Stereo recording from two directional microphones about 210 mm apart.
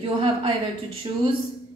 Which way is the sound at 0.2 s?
25° right (ahead or behind).